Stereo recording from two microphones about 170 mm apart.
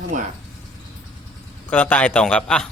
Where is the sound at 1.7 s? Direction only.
10° left (ahead or behind).